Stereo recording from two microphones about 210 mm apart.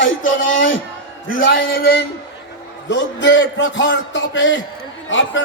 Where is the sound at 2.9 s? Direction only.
60° left (ahead or behind).